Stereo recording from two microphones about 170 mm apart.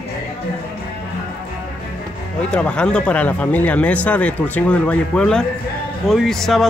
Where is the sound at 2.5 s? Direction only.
5° left (ahead or behind).